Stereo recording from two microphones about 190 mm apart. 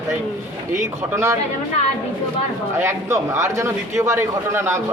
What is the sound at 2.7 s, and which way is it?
A man's voice, 15° right (ahead or behind).